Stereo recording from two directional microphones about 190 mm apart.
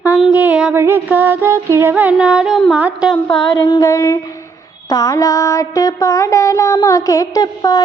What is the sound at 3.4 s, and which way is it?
Mantra, 20° left (ahead or behind).